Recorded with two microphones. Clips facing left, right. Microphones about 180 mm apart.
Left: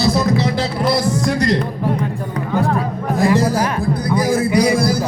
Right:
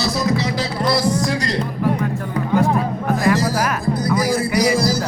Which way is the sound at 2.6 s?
15° right (ahead or behind).